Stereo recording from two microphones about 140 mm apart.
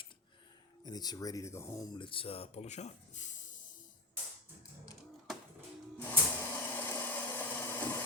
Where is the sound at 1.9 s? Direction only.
40° left (ahead or behind); by 3.4 s 60° left (ahead or behind).